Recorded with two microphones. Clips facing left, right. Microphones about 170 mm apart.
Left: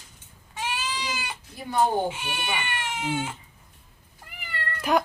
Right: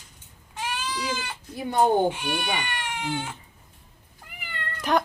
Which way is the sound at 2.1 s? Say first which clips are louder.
Right 3 dB; 10° left (ahead or behind).